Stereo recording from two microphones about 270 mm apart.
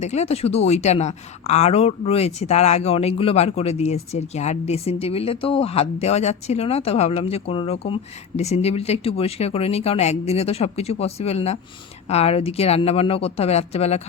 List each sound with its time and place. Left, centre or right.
0.0 s a woman's voice: left